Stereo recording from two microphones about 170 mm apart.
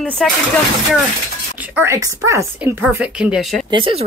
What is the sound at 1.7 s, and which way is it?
A woman's voice, 15° right (ahead or behind).